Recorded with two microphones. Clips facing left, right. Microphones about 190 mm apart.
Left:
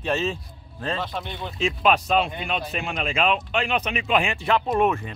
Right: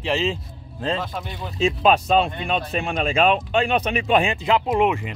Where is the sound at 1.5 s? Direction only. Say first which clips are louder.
Right 4 dB; 30° right (ahead or behind).